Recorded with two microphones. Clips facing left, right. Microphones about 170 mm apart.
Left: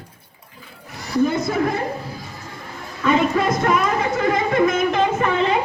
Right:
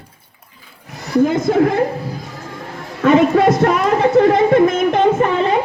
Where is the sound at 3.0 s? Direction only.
70° right (ahead or behind).